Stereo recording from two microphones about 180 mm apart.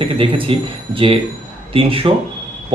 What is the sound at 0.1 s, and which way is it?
A man's voice, 30° right (ahead or behind).